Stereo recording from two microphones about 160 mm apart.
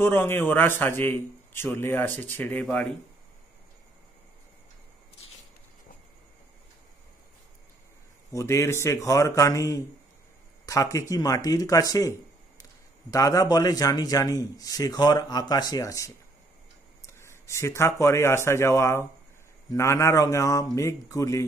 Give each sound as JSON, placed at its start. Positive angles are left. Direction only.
{"t": 0.0, "sound": "a man's voice", "side_deg": 15}
{"t": 8.3, "sound": "a man's voice", "side_deg": 20}
{"t": 13.1, "sound": "a man's voice", "side_deg": 20}